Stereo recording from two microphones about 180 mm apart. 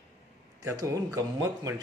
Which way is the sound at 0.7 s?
20° right (ahead or behind).